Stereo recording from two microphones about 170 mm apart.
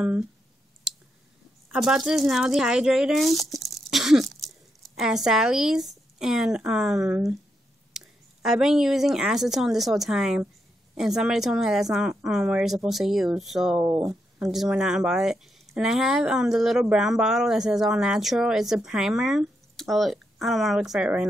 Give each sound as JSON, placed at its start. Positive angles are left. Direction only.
{"t": 1.7, "sound": "a woman's voice", "side_deg": -5}
{"t": 13.8, "sound": "speech", "side_deg": -20}
{"t": 14.4, "sound": "speech", "side_deg": 0}